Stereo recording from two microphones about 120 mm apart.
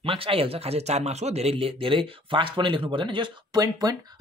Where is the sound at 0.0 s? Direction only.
50° right (ahead or behind).